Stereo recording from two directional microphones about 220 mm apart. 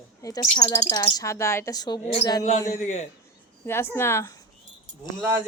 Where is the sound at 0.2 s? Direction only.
15° left (ahead or behind).